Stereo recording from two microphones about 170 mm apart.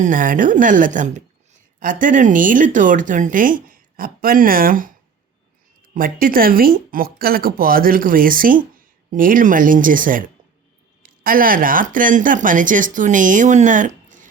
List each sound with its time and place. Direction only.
0.0 s speech: 50° right (ahead or behind)
5.9 s speech: 55° right (ahead or behind)